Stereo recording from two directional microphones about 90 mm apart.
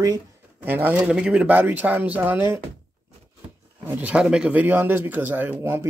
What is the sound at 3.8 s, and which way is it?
Speech, 20° right (ahead or behind).